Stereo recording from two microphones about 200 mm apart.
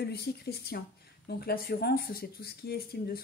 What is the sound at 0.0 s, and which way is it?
Speech, 55° left (ahead or behind).